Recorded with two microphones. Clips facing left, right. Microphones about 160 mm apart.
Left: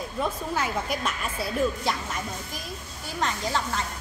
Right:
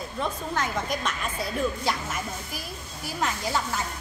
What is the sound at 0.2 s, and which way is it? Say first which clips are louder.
A woman's voice: left 1 dB; 5° left (ahead or behind).